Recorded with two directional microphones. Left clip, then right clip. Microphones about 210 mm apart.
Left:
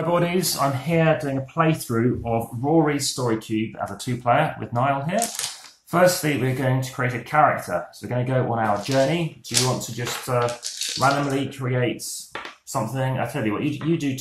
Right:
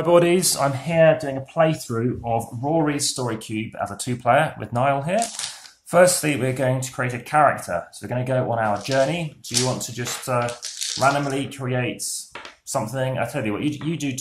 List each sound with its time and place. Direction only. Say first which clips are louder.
0.0 s speech: right 5 dB; 45° right (ahead or behind)
2.8 s speech: left 1 dB; 50° right (ahead or behind)